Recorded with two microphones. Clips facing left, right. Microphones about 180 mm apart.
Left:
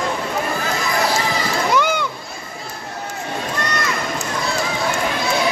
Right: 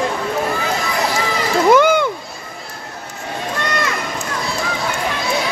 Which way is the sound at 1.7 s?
50° right (ahead or behind).